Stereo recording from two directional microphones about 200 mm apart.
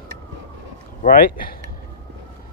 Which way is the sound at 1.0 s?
45° left (ahead or behind).